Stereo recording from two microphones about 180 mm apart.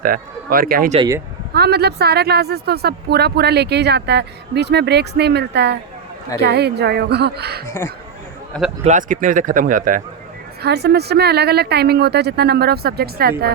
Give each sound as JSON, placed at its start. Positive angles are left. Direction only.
{"t": 0.0, "sound": "speech", "side_deg": -55}
{"t": 0.9, "sound": "speech", "side_deg": -20}
{"t": 1.5, "sound": "speech", "side_deg": -65}
{"t": 7.7, "sound": "speech", "side_deg": 15}
{"t": 8.8, "sound": "speech", "side_deg": -45}
{"t": 10.6, "sound": "speech", "side_deg": -65}